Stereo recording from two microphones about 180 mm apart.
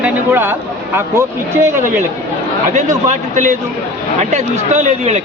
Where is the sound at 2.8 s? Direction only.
40° right (ahead or behind).